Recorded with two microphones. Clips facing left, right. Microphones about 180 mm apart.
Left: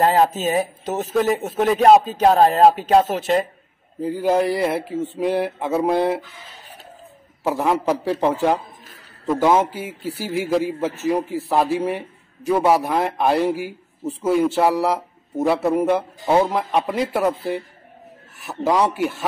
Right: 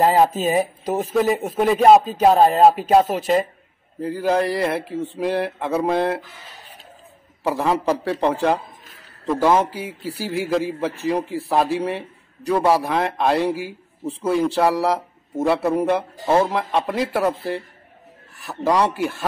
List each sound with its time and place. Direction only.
0.0 s speech: 5° right (ahead or behind)
4.3 s a man's voice: 5° left (ahead or behind)
7.4 s a man's voice: 5° left (ahead or behind)
18.4 s a man's voice: 20° left (ahead or behind)
18.9 s speech: 5° left (ahead or behind)